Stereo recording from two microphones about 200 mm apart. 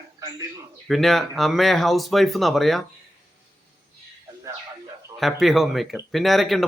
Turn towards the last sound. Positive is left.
turn(degrees=0)  # may be behind; listen again after turning